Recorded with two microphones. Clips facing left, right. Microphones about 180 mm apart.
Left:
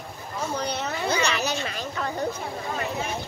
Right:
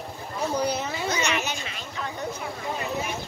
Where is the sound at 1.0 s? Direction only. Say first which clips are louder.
Left 3 dB; 35° left (ahead or behind).